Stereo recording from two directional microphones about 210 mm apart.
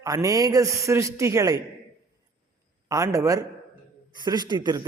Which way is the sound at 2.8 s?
15° right (ahead or behind).